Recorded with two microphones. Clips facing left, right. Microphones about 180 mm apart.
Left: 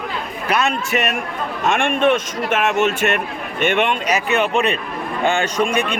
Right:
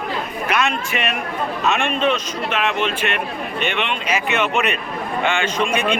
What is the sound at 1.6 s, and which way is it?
A man's voice, 50° left (ahead or behind).